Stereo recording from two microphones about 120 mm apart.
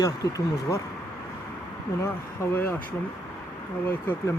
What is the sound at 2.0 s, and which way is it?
Speech, 20° left (ahead or behind).